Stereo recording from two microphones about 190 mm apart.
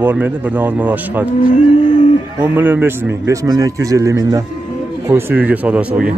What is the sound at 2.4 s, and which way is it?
Speech, 10° right (ahead or behind).